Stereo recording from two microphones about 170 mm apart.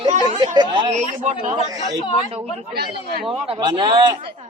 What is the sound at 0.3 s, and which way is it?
Speech, 25° right (ahead or behind).